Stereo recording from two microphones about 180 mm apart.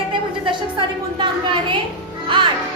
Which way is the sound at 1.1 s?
25° right (ahead or behind).